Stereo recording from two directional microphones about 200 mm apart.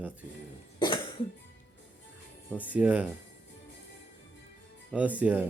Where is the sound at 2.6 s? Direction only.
5° right (ahead or behind).